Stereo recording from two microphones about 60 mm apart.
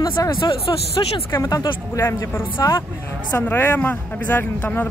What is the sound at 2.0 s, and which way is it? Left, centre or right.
A woman's voice, left.